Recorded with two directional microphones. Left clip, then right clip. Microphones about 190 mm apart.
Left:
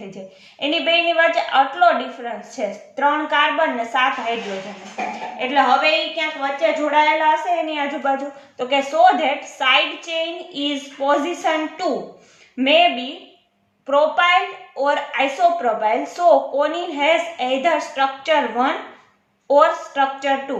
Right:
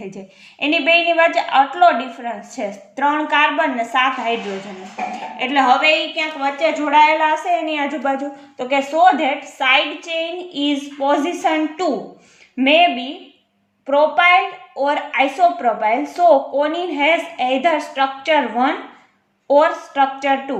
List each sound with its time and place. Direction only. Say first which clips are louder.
0.6 s a woman's voice: right 3 dB; 30° right (ahead or behind)
5.4 s a woman's voice: right 1 dB; 35° right (ahead or behind)